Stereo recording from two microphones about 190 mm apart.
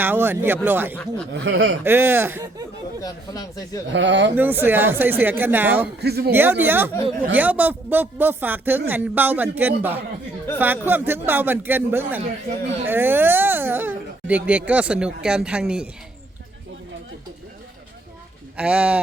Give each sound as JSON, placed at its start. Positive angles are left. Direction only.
{"t": 0.0, "sound": "speech", "side_deg": -10}
{"t": 1.3, "sound": "speech", "side_deg": -65}
{"t": 1.8, "sound": "speech", "side_deg": -10}
{"t": 3.0, "sound": "speech", "side_deg": 20}
{"t": 3.9, "sound": "speech", "side_deg": -70}
{"t": 4.4, "sound": "speech", "side_deg": -10}
{"t": 6.0, "sound": "speech", "side_deg": -55}
{"t": 6.3, "sound": "speech", "side_deg": -10}
{"t": 18.5, "sound": "speech", "side_deg": -5}